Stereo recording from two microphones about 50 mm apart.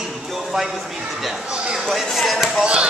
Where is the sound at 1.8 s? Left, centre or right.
Centre.